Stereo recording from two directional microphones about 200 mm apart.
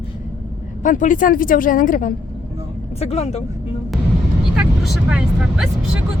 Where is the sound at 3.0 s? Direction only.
30° left (ahead or behind).